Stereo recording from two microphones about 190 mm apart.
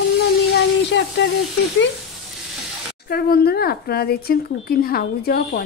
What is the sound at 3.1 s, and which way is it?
A woman's voice, 55° left (ahead or behind).